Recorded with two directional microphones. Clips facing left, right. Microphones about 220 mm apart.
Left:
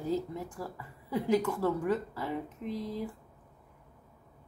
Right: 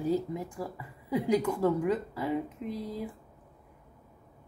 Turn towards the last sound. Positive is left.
turn(degrees=-15)  # may be behind; listen again after turning